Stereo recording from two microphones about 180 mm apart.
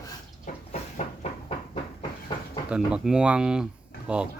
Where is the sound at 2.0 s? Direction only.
25° left (ahead or behind).